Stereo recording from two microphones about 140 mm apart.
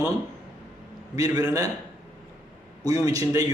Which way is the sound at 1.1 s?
25° right (ahead or behind).